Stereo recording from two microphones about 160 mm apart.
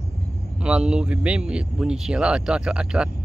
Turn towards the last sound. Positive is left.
turn(degrees=-5)  # may be behind; listen again after turning